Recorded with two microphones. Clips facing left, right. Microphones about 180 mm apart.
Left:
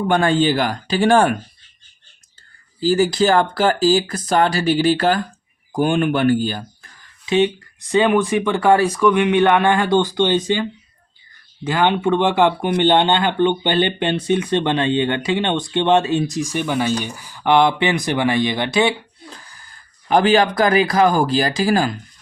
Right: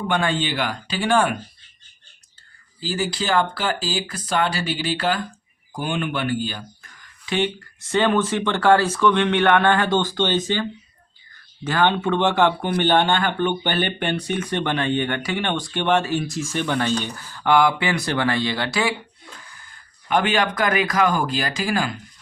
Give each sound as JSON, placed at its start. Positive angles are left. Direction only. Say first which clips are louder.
{"t": 0.1, "sound": "speech", "louder": "left 7 dB", "side_deg": 45}
{"t": 2.8, "sound": "speech", "louder": "left 9 dB", "side_deg": 45}
{"t": 7.3, "sound": "speech", "louder": "left 6 dB", "side_deg": 20}